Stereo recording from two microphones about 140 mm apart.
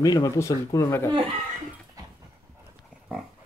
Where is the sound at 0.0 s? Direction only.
25° left (ahead or behind).